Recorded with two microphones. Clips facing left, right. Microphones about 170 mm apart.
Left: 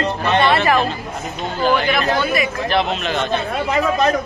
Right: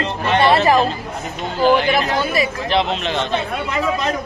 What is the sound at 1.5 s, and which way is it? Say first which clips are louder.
Speech: right 3 dB; 15° right (ahead or behind).